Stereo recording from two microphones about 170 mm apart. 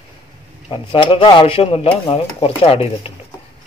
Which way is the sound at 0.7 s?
30° left (ahead or behind).